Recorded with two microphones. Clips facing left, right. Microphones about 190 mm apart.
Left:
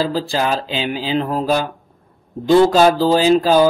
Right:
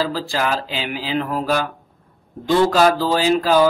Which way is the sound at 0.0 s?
25° left (ahead or behind).